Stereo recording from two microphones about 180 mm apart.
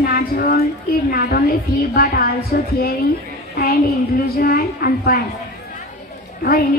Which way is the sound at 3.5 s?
60° left (ahead or behind).